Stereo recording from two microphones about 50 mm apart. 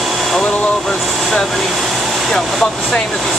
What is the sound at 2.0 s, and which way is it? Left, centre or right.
Vehicle, centre.